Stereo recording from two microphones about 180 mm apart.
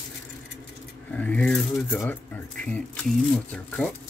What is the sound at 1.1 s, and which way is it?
Speech, 5° left (ahead or behind).